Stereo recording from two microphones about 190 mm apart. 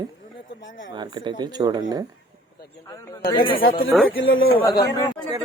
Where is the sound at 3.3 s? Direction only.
25° left (ahead or behind).